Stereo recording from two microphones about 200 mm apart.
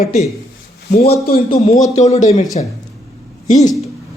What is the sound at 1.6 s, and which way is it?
Speech, 35° left (ahead or behind).